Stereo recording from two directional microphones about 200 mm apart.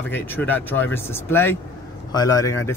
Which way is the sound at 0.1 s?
10° left (ahead or behind).